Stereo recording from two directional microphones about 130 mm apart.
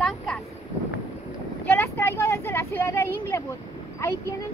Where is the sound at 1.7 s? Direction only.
15° left (ahead or behind).